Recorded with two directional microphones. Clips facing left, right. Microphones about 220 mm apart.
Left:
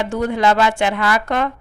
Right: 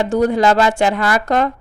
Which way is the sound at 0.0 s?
40° right (ahead or behind).